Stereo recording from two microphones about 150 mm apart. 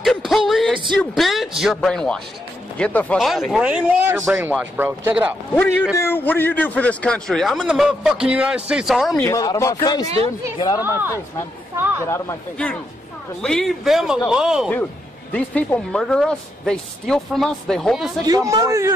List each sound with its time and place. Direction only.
0.0 s speech: centre (ahead or behind)
3.3 s speech: centre (ahead or behind)
5.5 s a man's voice: 10° left (ahead or behind)
9.1 s speech: 20° left (ahead or behind)
11.7 s chatter: 15° right (ahead or behind)
13.4 s a man's voice: 5° left (ahead or behind)
15.3 s a man's voice: 10° left (ahead or behind)
18.2 s speech: 25° right (ahead or behind)